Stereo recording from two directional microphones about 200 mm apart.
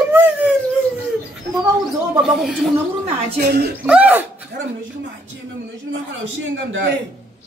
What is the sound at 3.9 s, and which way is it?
Speech, 5° right (ahead or behind).